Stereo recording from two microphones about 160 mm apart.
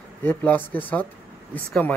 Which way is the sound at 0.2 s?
10° left (ahead or behind).